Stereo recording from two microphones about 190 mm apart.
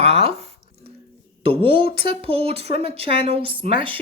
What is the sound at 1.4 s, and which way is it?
Speech, 30° right (ahead or behind).